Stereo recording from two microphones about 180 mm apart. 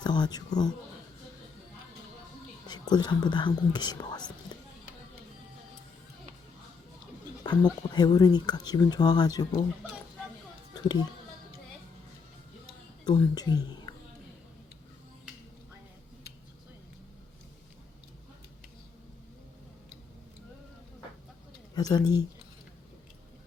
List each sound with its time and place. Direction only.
0.0 s speech: 25° left (ahead or behind)
2.6 s speech: 25° left (ahead or behind)
7.4 s speech: 25° left (ahead or behind)
13.1 s speech: 20° left (ahead or behind)
21.8 s speech: 20° left (ahead or behind)